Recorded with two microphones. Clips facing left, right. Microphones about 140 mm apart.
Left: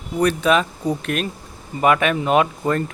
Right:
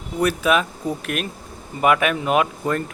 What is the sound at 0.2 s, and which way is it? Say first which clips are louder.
Speech: left 2 dB; 5° right (ahead or behind).